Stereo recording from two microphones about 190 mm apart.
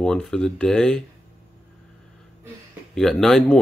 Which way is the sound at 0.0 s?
5° left (ahead or behind).